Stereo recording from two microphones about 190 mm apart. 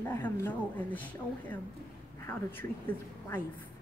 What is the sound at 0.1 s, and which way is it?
Speech, 10° left (ahead or behind).